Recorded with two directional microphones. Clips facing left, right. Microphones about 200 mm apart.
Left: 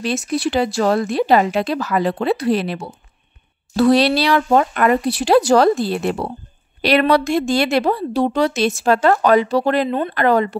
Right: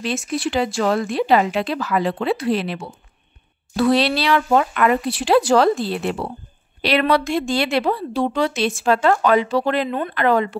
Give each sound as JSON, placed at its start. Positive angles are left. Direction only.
{"t": 0.0, "sound": "a woman's voice", "side_deg": 40}